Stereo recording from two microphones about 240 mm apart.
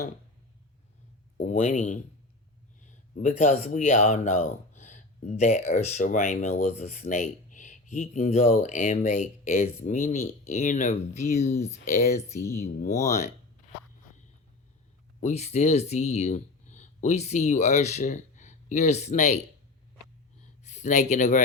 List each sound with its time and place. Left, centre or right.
1.4 s speech: left
3.2 s speech: left
12.3 s speech: centre
12.5 s speech: left
15.2 s speech: left
20.7 s speech: left